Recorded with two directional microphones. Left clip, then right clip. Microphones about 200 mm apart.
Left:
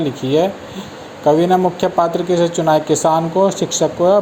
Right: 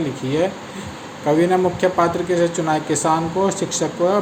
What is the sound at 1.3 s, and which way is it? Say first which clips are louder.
Speech: left 4 dB; 25° left (ahead or behind).